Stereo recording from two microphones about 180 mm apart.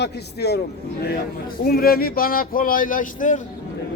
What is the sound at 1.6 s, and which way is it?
Speech, 55° left (ahead or behind).